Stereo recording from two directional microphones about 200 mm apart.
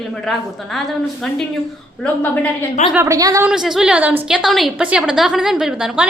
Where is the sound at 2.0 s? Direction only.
10° left (ahead or behind).